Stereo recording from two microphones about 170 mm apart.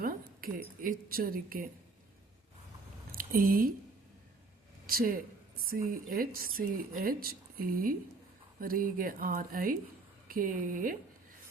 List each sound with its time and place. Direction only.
0.0 s a woman's voice: 60° right (ahead or behind)
3.1 s a sound: 60° right (ahead or behind)
4.9 s speech: 60° right (ahead or behind)